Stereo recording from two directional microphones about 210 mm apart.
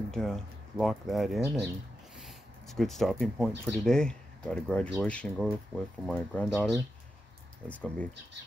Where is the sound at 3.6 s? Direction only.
Centre (ahead or behind).